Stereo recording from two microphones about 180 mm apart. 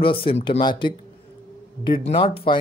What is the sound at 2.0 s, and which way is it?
Speech, 30° left (ahead or behind).